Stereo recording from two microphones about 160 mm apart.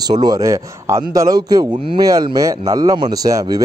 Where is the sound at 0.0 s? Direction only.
25° right (ahead or behind).